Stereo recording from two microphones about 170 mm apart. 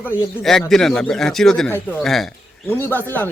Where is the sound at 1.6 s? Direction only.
15° left (ahead or behind).